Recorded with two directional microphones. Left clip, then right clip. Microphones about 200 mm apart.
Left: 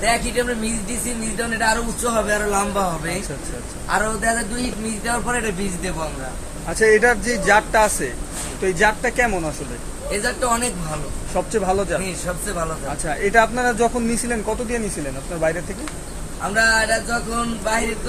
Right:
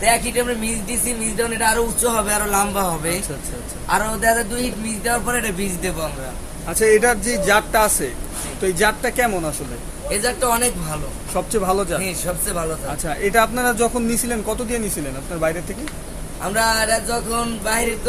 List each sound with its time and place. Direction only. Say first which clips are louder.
0.0 s speech: right 2 dB; 35° right (ahead or behind)
3.8 s music: right 2 dB; 45° right (ahead or behind)
6.7 s speech: even; 10° right (ahead or behind)
10.2 s music: right 2 dB; 45° right (ahead or behind)
11.3 s speech: even; 15° right (ahead or behind)
12.0 s music: right 1 dB; 40° right (ahead or behind)
13.1 s speech: left 1 dB; 10° right (ahead or behind)
16.6 s music: left 1 dB; 45° right (ahead or behind)